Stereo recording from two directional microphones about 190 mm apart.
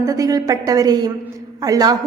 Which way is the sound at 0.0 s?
15° right (ahead or behind).